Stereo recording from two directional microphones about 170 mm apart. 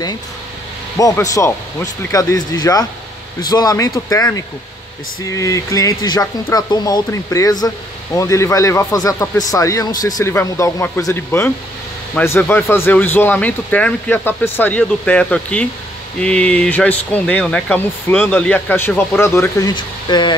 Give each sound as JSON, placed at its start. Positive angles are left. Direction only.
{"t": 0.9, "sound": "speech", "side_deg": 20}